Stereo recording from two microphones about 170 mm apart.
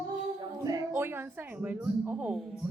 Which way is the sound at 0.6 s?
20° right (ahead or behind).